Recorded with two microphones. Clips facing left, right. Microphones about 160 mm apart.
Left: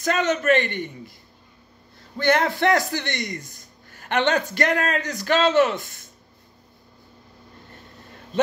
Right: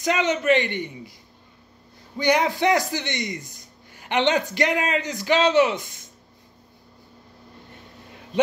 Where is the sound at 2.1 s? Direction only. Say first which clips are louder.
Even; 15° right (ahead or behind).